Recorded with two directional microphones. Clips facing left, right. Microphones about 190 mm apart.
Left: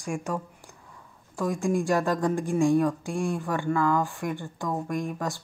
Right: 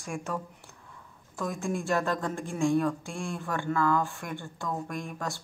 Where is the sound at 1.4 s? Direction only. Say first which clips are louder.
Left 6 dB; 15° left (ahead or behind).